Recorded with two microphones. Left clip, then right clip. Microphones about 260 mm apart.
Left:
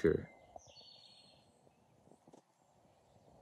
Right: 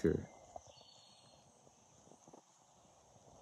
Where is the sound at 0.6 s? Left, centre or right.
Left.